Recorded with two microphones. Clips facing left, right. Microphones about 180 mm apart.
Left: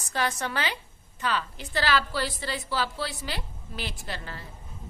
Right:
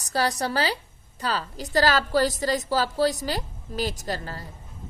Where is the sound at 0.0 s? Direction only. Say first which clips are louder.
Right 4 dB; 35° right (ahead or behind).